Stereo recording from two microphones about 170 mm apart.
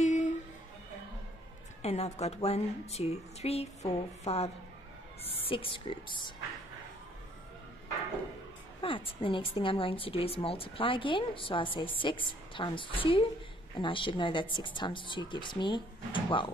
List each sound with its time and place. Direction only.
0.0 s a sound: 45° left (ahead or behind)
1.8 s a woman's voice: 40° left (ahead or behind)
8.8 s a woman's voice: 30° left (ahead or behind)